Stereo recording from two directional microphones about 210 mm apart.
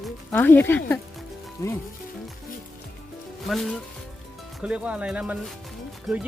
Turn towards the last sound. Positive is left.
turn(degrees=0)  # may be behind; listen again after turning